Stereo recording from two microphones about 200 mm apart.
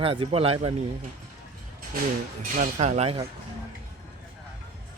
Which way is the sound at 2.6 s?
35° right (ahead or behind).